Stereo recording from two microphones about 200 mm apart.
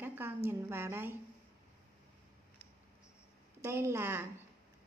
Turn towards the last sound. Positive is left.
turn(degrees=-10)  # may be behind; listen again after turning